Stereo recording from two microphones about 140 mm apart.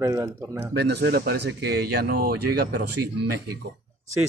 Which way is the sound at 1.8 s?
90° right.